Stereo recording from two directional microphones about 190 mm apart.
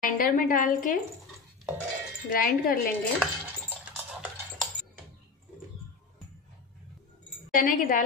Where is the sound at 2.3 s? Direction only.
50° left (ahead or behind).